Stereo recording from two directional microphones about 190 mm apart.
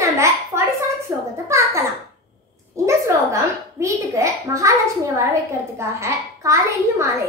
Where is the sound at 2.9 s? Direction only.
15° right (ahead or behind).